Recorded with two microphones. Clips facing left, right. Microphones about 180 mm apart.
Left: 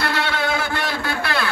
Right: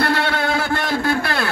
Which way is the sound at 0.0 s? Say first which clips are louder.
Right 3 dB; 55° right (ahead or behind).